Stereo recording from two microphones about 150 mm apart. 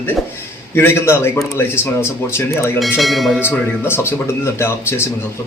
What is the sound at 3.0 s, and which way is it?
Speech, centre (ahead or behind).